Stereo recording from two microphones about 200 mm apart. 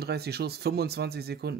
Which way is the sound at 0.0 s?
55° right (ahead or behind).